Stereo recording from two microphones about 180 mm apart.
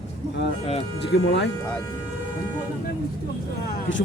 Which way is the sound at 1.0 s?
75° left (ahead or behind).